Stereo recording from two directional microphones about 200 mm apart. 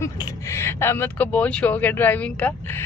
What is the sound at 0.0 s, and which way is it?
Speech, 15° left (ahead or behind).